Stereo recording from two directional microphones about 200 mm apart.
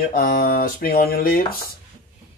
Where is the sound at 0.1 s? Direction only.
45° left (ahead or behind).